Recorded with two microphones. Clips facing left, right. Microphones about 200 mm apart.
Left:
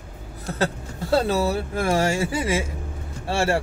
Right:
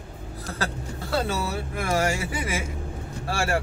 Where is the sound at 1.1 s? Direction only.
35° left (ahead or behind).